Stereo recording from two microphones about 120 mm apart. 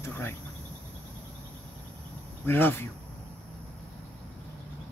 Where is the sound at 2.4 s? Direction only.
20° left (ahead or behind).